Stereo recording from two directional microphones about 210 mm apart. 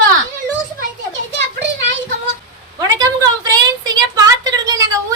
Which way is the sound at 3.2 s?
20° right (ahead or behind).